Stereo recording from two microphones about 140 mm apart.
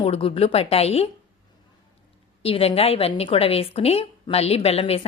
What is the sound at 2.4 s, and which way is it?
A woman's voice, 45° left (ahead or behind).